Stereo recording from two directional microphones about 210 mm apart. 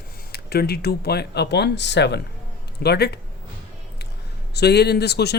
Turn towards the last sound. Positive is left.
turn(degrees=50)  # may be behind; listen again after turning